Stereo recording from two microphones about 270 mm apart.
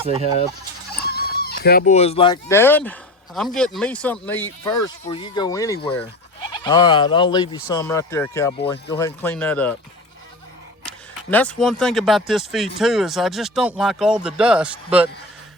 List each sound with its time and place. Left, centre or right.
0.0 s speech: right
1.1 s speech: left; by 9.7 s centre
10.8 s speech: centre